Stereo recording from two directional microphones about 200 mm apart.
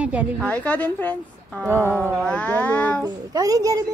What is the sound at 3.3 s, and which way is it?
Speech, 20° right (ahead or behind).